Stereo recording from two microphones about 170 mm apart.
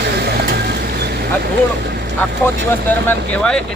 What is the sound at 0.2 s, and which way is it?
Vehicle, 70° right (ahead or behind).